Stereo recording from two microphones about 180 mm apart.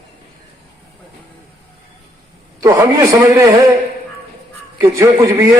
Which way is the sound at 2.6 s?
15° right (ahead or behind).